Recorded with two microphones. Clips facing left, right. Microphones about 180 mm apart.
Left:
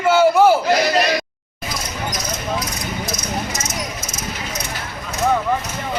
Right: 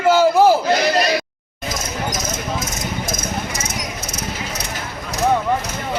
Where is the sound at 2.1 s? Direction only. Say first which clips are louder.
Even; 45° right (ahead or behind); by 4.6 s 65° right (ahead or behind).